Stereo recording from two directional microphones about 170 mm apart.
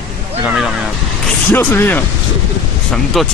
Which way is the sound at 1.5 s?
15° left (ahead or behind).